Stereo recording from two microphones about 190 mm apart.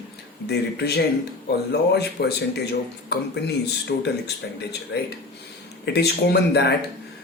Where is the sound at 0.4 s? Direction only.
60° left (ahead or behind).